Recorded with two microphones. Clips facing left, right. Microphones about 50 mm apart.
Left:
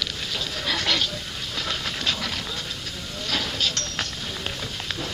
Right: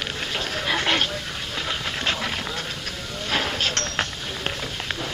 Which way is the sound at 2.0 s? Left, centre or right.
Right.